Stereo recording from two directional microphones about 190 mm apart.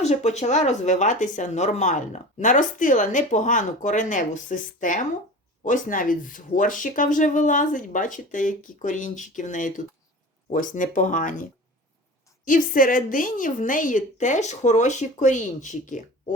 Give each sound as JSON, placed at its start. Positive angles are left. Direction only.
{"t": 0.0, "sound": "speech", "side_deg": 35}
{"t": 12.5, "sound": "speech", "side_deg": 45}